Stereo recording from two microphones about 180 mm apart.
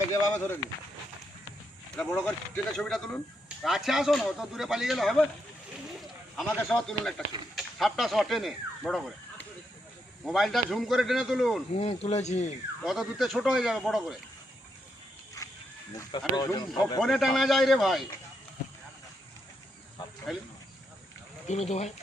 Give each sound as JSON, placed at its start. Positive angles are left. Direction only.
{"t": 0.1, "sound": "speech", "side_deg": 10}
{"t": 2.0, "sound": "speech", "side_deg": 5}
{"t": 6.0, "sound": "a sound", "side_deg": 0}
{"t": 6.6, "sound": "speech", "side_deg": 10}
{"t": 10.2, "sound": "speech", "side_deg": 0}
{"t": 11.7, "sound": "speech", "side_deg": 35}
{"t": 12.8, "sound": "speech", "side_deg": 0}
{"t": 16.0, "sound": "speech", "side_deg": 25}
{"t": 17.0, "sound": "speech", "side_deg": 0}
{"t": 20.0, "sound": "cricket", "side_deg": 25}
{"t": 21.4, "sound": "speech", "side_deg": 40}